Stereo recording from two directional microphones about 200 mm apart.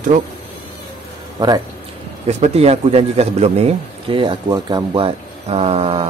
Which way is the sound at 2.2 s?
30° right (ahead or behind).